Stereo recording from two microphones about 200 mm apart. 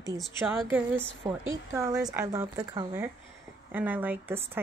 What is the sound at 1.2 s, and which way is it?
Speech, 15° right (ahead or behind).